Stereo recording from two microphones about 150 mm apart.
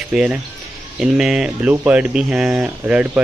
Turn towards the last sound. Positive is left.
turn(degrees=-10)  # may be behind; listen again after turning